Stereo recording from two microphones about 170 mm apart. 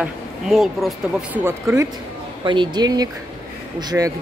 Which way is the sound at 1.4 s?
15° right (ahead or behind).